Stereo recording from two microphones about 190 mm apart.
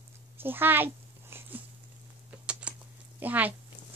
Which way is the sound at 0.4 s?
10° right (ahead or behind).